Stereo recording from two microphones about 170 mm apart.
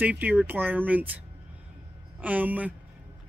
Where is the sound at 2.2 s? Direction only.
10° right (ahead or behind).